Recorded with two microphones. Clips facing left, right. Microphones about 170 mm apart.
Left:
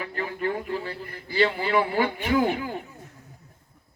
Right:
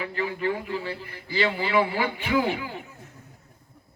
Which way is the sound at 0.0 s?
45° left (ahead or behind).